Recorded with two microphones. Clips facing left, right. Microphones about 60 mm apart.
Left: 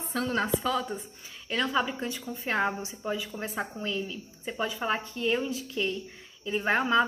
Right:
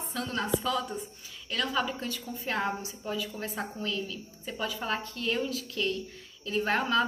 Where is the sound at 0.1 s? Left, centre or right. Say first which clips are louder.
Left 3 dB; left.